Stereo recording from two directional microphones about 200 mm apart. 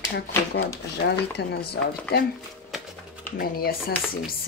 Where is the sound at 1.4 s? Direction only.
55° left (ahead or behind).